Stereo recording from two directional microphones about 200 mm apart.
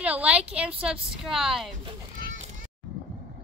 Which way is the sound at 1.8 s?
25° right (ahead or behind).